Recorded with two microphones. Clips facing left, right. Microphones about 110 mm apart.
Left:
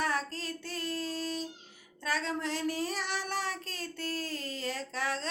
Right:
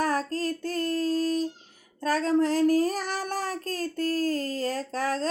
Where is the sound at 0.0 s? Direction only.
40° right (ahead or behind).